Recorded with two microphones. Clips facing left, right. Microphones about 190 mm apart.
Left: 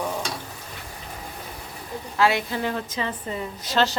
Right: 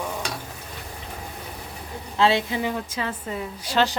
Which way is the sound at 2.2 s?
25° right (ahead or behind).